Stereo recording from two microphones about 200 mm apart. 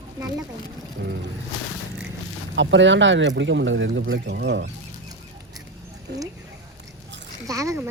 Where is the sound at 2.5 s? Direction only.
65° right (ahead or behind).